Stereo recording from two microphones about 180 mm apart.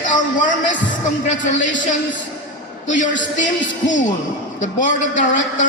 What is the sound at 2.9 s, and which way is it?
Speech, 90° left.